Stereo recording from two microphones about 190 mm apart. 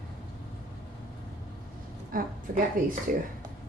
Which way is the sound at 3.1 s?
45° right (ahead or behind).